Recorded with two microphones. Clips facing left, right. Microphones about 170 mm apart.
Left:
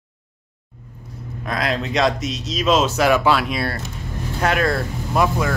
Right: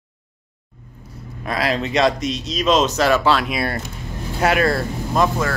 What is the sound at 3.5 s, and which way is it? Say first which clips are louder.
Speech: right 1 dB; 10° right (ahead or behind).